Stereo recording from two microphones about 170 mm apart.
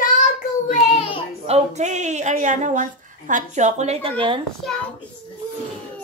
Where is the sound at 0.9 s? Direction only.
35° left (ahead or behind).